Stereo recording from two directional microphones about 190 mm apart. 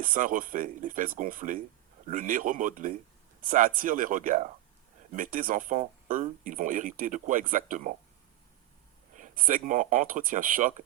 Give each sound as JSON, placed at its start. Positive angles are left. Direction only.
{"t": 0.0, "sound": "speech", "side_deg": -45}
{"t": 9.1, "sound": "speech", "side_deg": -45}